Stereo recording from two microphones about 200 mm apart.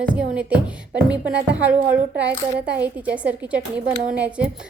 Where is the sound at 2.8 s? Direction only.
5° right (ahead or behind).